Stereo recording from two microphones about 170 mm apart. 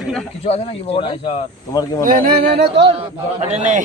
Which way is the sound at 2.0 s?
55° right (ahead or behind).